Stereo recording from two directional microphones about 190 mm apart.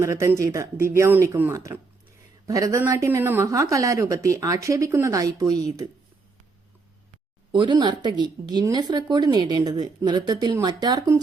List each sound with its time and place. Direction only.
0.0 s speech: 15° right (ahead or behind)
7.5 s speech: 25° right (ahead or behind)